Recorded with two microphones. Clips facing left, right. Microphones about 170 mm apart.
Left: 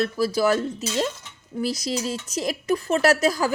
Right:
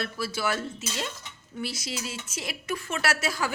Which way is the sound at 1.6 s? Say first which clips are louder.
Left 8 dB; 40° left (ahead or behind).